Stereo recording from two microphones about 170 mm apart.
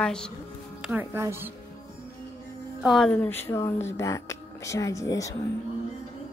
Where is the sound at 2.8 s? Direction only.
Centre (ahead or behind); by 5.3 s 20° left (ahead or behind).